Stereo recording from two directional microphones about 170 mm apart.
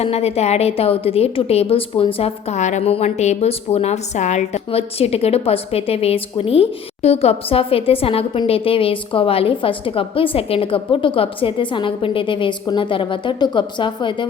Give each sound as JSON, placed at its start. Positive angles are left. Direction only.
{"t": 0.0, "sound": "a woman's voice", "side_deg": 35}